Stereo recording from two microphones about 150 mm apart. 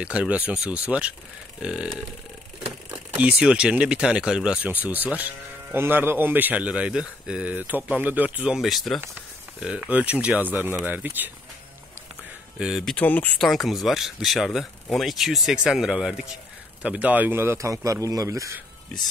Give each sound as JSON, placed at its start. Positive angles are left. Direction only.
{"t": 0.0, "sound": "speech", "side_deg": -10}
{"t": 12.5, "sound": "speech", "side_deg": -5}
{"t": 12.9, "sound": "speech", "side_deg": 10}
{"t": 13.4, "sound": "a man's voice", "side_deg": 0}